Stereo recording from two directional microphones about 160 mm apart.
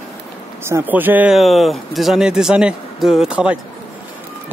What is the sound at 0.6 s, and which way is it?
Speech, 15° right (ahead or behind).